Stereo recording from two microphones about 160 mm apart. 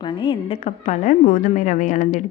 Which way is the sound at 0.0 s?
30° left (ahead or behind).